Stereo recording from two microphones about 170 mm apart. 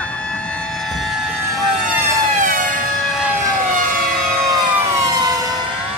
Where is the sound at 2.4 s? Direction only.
50° right (ahead or behind).